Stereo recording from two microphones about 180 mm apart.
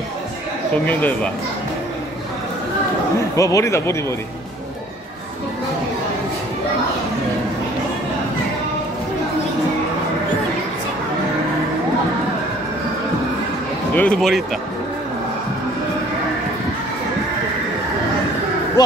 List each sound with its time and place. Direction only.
0.8 s speech: 10° left (ahead or behind)
3.3 s speech: 20° left (ahead or behind)
13.9 s speech: 5° left (ahead or behind)
18.8 s speech: 20° left (ahead or behind)